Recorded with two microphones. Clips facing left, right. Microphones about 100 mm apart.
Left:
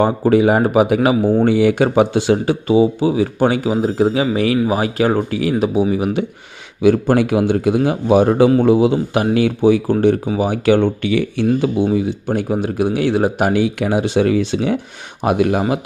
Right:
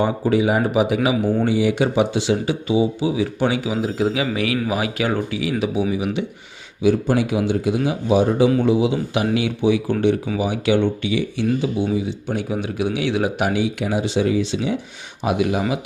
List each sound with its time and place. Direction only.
0.0 s speech: 50° left (ahead or behind)
6.8 s a man's voice: 55° left (ahead or behind)